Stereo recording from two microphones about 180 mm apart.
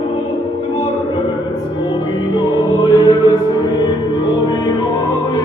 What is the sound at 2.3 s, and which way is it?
Music, 20° left (ahead or behind).